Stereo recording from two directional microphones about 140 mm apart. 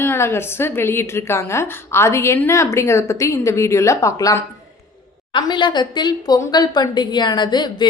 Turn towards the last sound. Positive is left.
turn(degrees=30)  # may be behind; listen again after turning